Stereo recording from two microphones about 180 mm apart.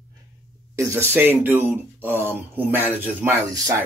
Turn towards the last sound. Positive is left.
turn(degrees=-15)  # may be behind; listen again after turning